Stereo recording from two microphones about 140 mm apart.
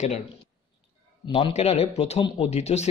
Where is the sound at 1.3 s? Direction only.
50° left (ahead or behind).